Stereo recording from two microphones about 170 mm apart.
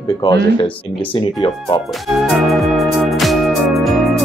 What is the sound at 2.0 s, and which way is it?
Music, centre (ahead or behind).